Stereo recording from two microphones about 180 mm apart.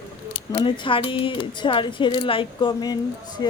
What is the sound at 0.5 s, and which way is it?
Speech, 25° left (ahead or behind).